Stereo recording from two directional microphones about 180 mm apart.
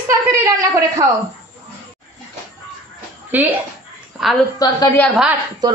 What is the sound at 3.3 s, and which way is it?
Speech, 10° right (ahead or behind).